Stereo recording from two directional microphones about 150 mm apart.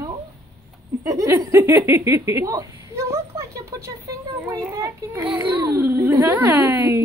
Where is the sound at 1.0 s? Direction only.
20° right (ahead or behind).